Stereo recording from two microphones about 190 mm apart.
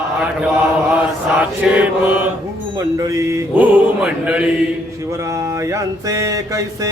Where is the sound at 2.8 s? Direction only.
15° right (ahead or behind).